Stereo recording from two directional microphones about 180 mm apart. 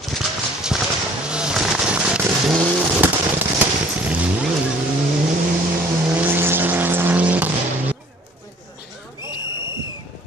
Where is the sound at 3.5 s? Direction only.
5° right (ahead or behind).